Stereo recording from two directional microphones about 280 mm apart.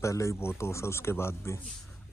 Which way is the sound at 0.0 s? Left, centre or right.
Centre.